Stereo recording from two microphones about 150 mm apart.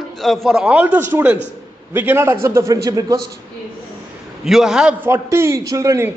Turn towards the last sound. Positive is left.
turn(degrees=-20)  # may be behind; listen again after turning